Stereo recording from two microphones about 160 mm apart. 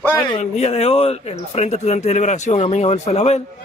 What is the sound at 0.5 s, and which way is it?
Speech, 40° left (ahead or behind).